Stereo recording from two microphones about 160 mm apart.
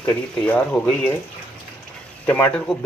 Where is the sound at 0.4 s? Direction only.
10° left (ahead or behind).